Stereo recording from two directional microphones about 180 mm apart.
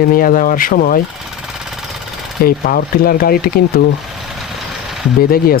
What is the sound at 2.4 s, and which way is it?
Speech, 55° left (ahead or behind).